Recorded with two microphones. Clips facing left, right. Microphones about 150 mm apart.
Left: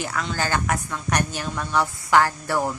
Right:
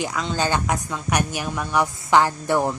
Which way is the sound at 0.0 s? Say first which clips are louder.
Right 3 dB; 20° right (ahead or behind).